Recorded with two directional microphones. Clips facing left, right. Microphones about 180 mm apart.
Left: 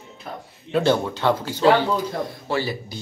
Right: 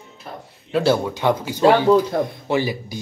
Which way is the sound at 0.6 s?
5° right (ahead or behind).